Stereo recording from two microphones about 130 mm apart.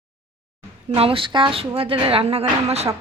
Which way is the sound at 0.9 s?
45° right (ahead or behind).